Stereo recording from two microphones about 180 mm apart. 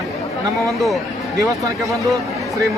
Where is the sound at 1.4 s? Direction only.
20° right (ahead or behind).